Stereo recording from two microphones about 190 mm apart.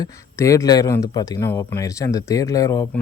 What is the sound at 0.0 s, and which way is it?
Speech, 15° left (ahead or behind).